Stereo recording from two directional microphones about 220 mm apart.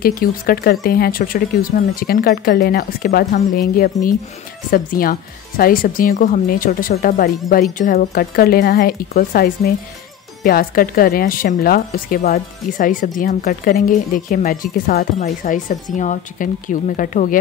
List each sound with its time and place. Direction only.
0.0 s speech: 40° left (ahead or behind)